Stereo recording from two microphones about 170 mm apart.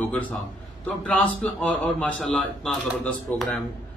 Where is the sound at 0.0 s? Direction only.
10° left (ahead or behind).